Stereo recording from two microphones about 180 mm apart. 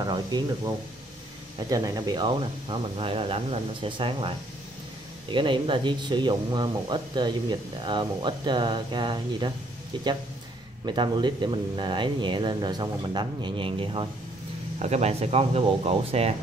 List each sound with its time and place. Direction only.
0.0 s a man's voice: 25° right (ahead or behind)
1.7 s a man's voice: 20° right (ahead or behind)
10.9 s a man's voice: 25° right (ahead or behind)